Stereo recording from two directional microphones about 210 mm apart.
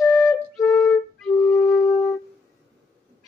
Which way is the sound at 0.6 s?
15° left (ahead or behind).